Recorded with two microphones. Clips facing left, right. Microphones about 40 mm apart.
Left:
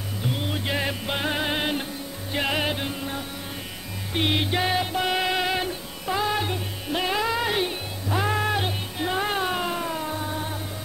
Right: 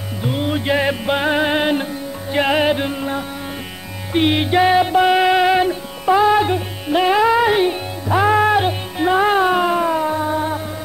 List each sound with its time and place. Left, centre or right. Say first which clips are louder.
0.2 s music: right 8 dB; right